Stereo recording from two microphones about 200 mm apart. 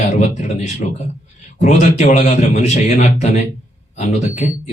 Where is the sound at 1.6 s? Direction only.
35° left (ahead or behind).